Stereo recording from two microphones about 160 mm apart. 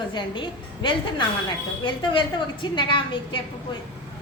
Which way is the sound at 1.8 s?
30° left (ahead or behind).